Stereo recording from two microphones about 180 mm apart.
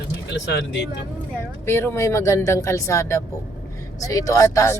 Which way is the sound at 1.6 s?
15° left (ahead or behind).